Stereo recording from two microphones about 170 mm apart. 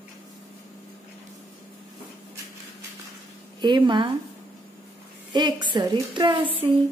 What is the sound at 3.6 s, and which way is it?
Speech, 25° right (ahead or behind).